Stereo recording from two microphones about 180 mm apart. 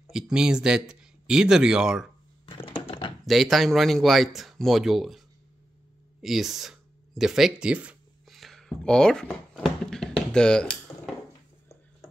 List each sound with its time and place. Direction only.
0.1 s speech: 5° right (ahead or behind)
2.4 s typing: 30° left (ahead or behind)
3.3 s speech: centre (ahead or behind)
6.2 s a sound: centre (ahead or behind)